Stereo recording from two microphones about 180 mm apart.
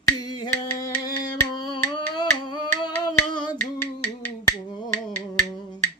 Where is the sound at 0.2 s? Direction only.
20° left (ahead or behind).